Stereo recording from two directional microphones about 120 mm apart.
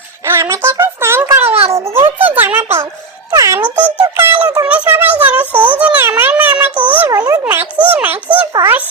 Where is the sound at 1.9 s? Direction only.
20° right (ahead or behind).